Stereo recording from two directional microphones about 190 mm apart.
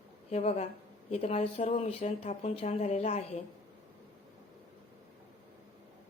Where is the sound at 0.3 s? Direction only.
35° left (ahead or behind).